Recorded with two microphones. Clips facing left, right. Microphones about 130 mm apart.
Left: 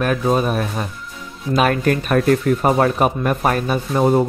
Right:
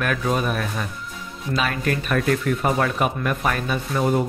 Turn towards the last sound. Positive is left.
turn(degrees=35)  # may be behind; listen again after turning